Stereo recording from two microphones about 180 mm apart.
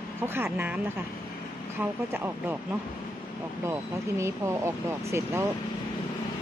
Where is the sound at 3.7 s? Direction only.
15° right (ahead or behind).